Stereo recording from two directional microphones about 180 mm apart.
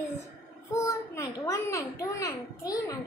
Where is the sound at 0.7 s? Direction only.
15° left (ahead or behind).